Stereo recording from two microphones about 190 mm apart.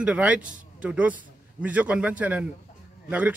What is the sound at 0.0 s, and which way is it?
Speech, 5° right (ahead or behind).